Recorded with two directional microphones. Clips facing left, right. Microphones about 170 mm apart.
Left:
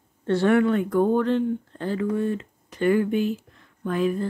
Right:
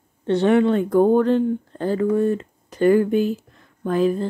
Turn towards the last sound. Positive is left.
turn(degrees=-30)  # may be behind; listen again after turning